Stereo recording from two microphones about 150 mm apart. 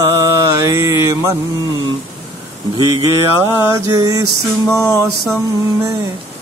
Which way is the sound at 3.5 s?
15° right (ahead or behind).